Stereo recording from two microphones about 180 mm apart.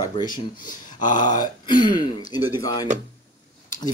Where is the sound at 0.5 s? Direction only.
45° left (ahead or behind).